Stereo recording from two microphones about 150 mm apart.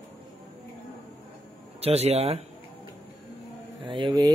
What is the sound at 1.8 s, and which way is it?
Speech, 45° right (ahead or behind).